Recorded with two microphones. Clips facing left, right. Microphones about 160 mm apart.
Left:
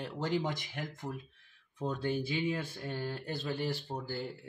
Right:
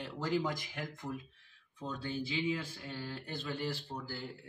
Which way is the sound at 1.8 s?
50° left (ahead or behind).